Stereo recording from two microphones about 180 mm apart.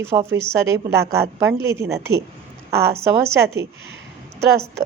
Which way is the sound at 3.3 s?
15° right (ahead or behind).